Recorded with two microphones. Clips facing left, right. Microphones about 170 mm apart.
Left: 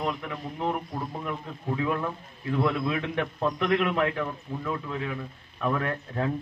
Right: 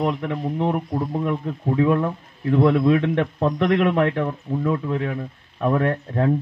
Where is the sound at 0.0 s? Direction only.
55° right (ahead or behind).